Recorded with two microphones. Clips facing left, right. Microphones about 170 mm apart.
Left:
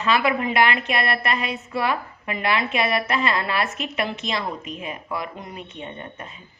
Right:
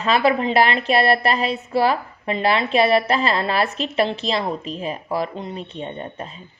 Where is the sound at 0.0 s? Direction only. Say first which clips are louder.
Right 3 dB; 35° right (ahead or behind).